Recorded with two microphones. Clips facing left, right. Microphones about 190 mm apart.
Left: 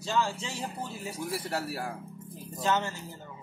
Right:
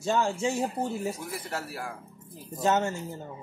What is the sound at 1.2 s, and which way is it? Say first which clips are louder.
Speech: left 3 dB; 35° left (ahead or behind).